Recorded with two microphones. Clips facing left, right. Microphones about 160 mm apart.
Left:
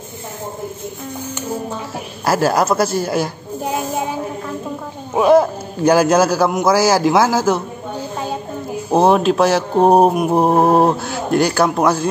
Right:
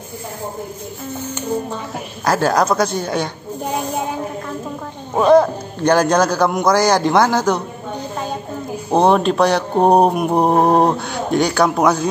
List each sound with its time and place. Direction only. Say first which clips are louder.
2.2 s a woman's voice: even; 5° left (ahead or behind)
5.1 s mantra: even; 5° left (ahead or behind)
8.9 s mantra: left 1 dB; 5° left (ahead or behind)